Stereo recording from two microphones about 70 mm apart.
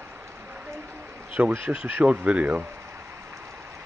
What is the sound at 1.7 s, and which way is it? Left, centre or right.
Speech, right.